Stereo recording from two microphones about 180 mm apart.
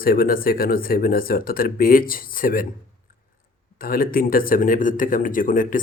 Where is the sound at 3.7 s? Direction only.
55° left (ahead or behind).